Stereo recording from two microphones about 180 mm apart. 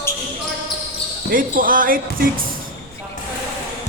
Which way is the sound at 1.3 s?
50° right (ahead or behind).